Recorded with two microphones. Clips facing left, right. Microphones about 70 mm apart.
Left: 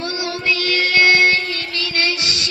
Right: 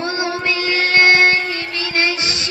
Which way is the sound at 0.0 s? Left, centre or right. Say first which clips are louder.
Right 3 dB; right.